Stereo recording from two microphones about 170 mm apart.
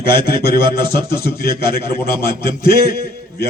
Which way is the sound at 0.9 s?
65° left (ahead or behind).